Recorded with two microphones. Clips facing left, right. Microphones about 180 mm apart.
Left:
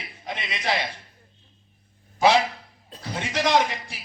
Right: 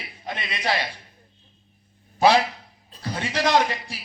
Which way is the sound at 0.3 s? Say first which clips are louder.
Right 1 dB; 20° left (ahead or behind).